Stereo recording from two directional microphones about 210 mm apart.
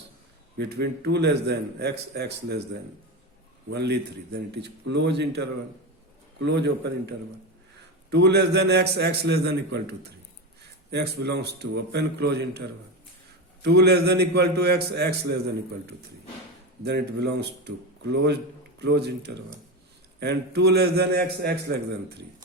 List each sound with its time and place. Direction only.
0.5 s a man's voice: 50° right (ahead or behind)
3.7 s a man's voice: 55° right (ahead or behind)
16.8 s a man's voice: 55° right (ahead or behind)